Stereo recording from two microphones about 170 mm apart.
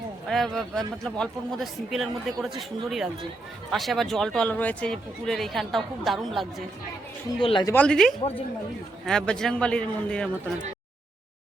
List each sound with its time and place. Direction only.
0.3 s a man's voice: centre (ahead or behind)
7.4 s speech: 30° left (ahead or behind)
7.7 s a man's voice: 5° left (ahead or behind)